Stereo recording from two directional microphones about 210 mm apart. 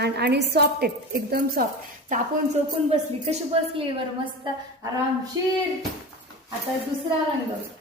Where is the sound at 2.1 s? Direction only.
30° right (ahead or behind).